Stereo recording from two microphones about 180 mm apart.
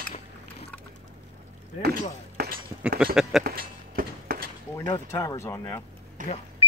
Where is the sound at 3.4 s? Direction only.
55° right (ahead or behind).